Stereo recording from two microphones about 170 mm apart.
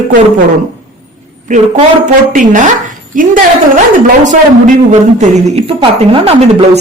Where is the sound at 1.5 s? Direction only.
45° right (ahead or behind).